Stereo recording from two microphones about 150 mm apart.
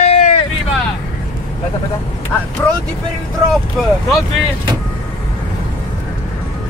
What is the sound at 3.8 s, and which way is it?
Speech, centre (ahead or behind).